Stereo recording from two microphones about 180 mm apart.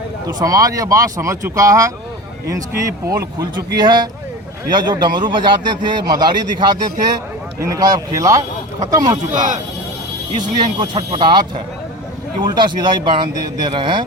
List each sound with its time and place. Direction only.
0.3 s a man's voice: 20° right (ahead or behind)
9.3 s speech: 45° right (ahead or behind)
10.3 s a man's voice: 25° right (ahead or behind)